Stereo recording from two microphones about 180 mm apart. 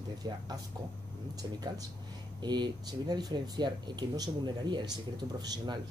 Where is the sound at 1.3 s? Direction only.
20° right (ahead or behind).